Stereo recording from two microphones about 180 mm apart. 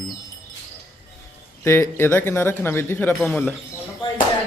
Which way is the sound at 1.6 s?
15° left (ahead or behind).